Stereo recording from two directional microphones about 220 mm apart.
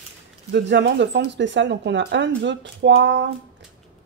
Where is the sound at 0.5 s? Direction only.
50° right (ahead or behind).